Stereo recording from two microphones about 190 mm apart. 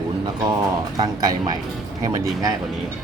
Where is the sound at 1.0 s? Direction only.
20° right (ahead or behind).